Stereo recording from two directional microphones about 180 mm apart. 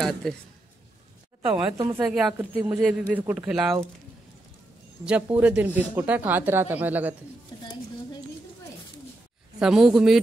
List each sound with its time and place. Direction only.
0.0 s a man's voice: centre (ahead or behind)
1.4 s a man's voice: 5° right (ahead or behind)
5.0 s speech: 5° right (ahead or behind)
7.5 s a sound: 25° left (ahead or behind)
9.6 s a man's voice: 5° right (ahead or behind)